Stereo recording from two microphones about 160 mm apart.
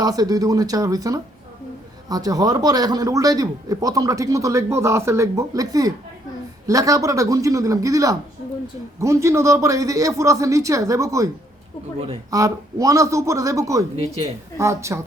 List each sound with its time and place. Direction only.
0.0 s a man's voice: 25° right (ahead or behind)
12.3 s a man's voice: 20° right (ahead or behind)